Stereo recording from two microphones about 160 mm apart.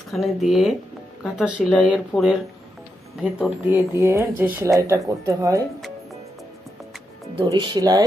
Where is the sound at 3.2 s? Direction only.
10° right (ahead or behind).